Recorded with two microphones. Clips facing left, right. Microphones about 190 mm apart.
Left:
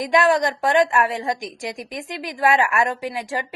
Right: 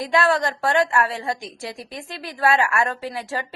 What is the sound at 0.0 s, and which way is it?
A woman's voice, 15° left (ahead or behind).